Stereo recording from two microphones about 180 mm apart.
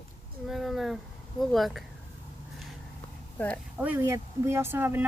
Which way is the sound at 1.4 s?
Centre (ahead or behind).